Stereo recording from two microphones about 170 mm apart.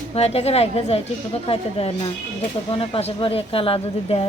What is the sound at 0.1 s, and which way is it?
Speech, 35° left (ahead or behind).